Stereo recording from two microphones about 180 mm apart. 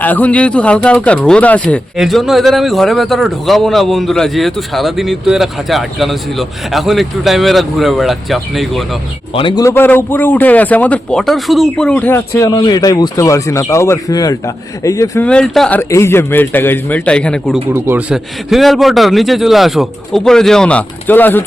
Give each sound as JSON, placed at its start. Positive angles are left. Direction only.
{"t": 0.0, "sound": "speech", "side_deg": 10}
{"t": 9.3, "sound": "speech", "side_deg": 25}
{"t": 9.6, "sound": "speech", "side_deg": 10}
{"t": 15.3, "sound": "speech", "side_deg": 5}
{"t": 17.7, "sound": "a man's voice", "side_deg": -15}
{"t": 18.1, "sound": "speech", "side_deg": 0}